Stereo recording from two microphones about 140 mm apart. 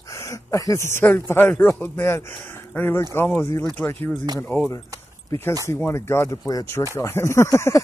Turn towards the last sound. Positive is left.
turn(degrees=20)  # may be behind; listen again after turning